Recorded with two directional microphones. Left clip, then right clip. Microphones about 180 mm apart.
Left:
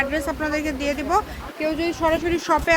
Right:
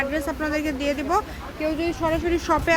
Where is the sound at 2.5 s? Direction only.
10° right (ahead or behind).